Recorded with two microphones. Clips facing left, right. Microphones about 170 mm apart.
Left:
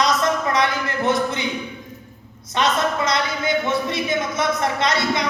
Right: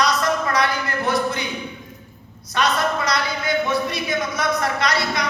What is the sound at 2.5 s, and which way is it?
Speech, 25° left (ahead or behind).